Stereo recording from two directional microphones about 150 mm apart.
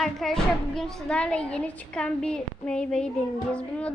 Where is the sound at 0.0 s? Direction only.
Centre (ahead or behind).